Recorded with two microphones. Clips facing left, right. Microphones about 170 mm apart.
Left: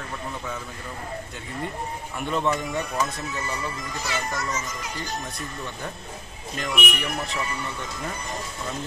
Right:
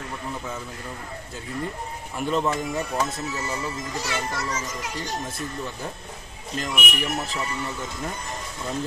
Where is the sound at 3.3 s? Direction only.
25° right (ahead or behind).